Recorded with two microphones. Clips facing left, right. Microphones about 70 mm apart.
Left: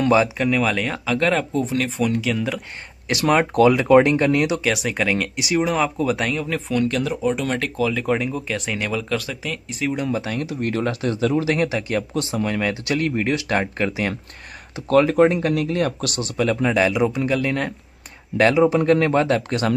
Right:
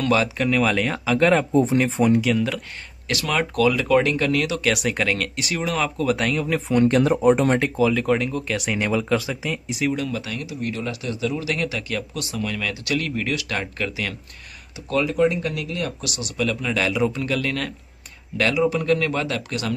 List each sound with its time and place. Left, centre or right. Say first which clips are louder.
0.0 s speech: left 3 dB; centre
0.4 s speech: even; centre
1.5 s speech: right 4 dB; right
2.2 s speech: right 1 dB; centre
3.1 s speech: left 5 dB; left
4.6 s speech: even; centre
6.0 s speech: even; centre
6.7 s speech: right 5 dB; right
7.5 s speech: right 3 dB; centre
7.9 s speech: right 1 dB; centre
8.7 s speech: right 4 dB; centre
9.9 s speech: left 4 dB; left
14.9 s speech: left 5 dB; left
16.7 s speech: left 3 dB; left